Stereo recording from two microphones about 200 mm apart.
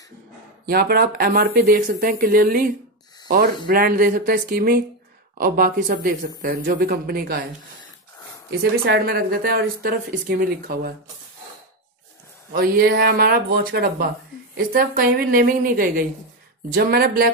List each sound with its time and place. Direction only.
0.7 s speech: 50° right (ahead or behind)
8.5 s speech: 55° right (ahead or behind)
12.5 s speech: 45° right (ahead or behind)